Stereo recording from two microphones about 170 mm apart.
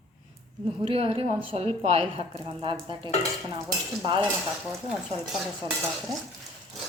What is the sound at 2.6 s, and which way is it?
Stir, 30° right (ahead or behind).